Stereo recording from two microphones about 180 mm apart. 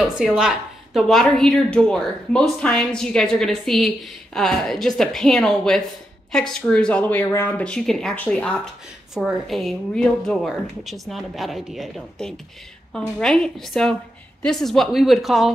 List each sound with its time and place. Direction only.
0.0 s speech: 5° right (ahead or behind)